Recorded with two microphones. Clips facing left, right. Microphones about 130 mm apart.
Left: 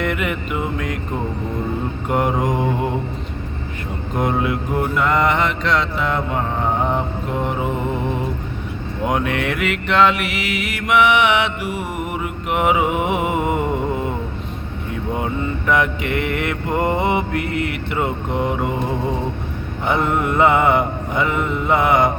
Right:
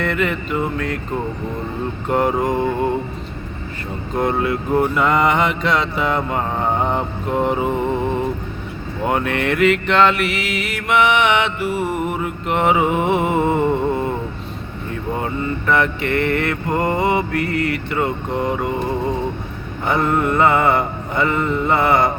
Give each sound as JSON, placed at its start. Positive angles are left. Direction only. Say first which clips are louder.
{"t": 0.0, "sound": "mantra", "louder": "right 1 dB", "side_deg": 15}
{"t": 2.0, "sound": "mantra", "louder": "right 2 dB", "side_deg": 15}
{"t": 4.2, "sound": "mantra", "louder": "right 1 dB", "side_deg": 15}
{"t": 4.9, "sound": "mantra", "louder": "right 1 dB", "side_deg": -5}
{"t": 9.0, "sound": "mantra", "louder": "right 1 dB", "side_deg": 10}
{"t": 15.2, "sound": "mantra", "louder": "even", "side_deg": 15}
{"t": 19.9, "sound": "mantra", "louder": "right 1 dB", "side_deg": 15}